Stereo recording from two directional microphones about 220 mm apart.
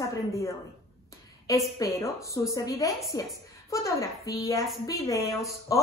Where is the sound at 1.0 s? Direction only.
15° left (ahead or behind).